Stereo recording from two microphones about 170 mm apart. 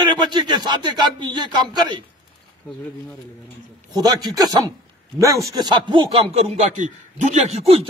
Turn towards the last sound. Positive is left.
turn(degrees=-35)  # may be behind; listen again after turning